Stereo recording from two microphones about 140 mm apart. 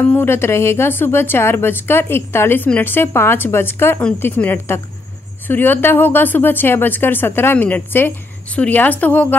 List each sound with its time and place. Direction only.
0.0 s speech: 15° left (ahead or behind)